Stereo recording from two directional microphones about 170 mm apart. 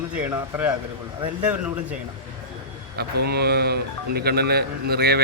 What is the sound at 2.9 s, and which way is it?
Speech, 70° right (ahead or behind).